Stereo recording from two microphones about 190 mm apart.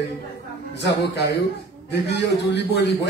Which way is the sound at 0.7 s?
65° left (ahead or behind).